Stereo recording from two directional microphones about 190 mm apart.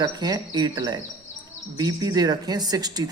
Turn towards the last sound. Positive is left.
turn(degrees=-20)  # may be behind; listen again after turning